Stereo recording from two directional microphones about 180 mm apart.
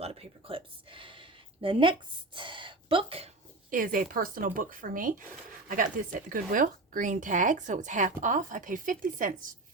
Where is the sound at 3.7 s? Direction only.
50° right (ahead or behind).